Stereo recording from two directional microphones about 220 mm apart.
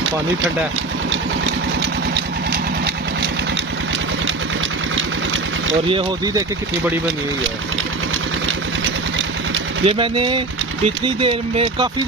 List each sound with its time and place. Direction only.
1.4 s vehicle: 50° right (ahead or behind)
5.9 s speech: 20° right (ahead or behind)
9.8 s speech: 25° right (ahead or behind)